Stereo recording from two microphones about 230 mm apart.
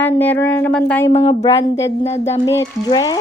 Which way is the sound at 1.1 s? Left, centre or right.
Left.